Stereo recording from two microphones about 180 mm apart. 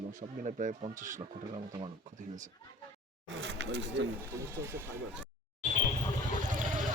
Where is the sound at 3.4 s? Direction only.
75° right (ahead or behind).